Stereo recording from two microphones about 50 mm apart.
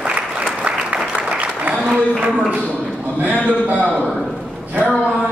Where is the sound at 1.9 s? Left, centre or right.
Right.